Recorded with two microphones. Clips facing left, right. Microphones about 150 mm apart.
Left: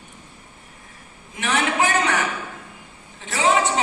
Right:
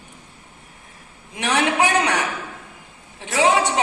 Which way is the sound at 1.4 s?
70° right (ahead or behind).